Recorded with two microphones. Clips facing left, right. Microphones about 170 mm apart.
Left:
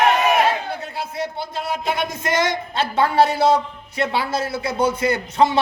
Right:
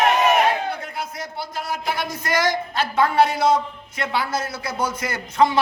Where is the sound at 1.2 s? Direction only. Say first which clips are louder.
Left 4 dB; 25° left (ahead or behind).